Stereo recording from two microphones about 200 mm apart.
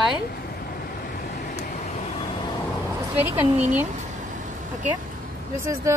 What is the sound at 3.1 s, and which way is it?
Speech, 10° right (ahead or behind).